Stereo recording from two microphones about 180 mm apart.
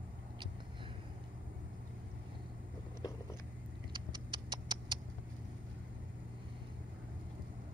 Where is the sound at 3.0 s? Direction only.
25° left (ahead or behind).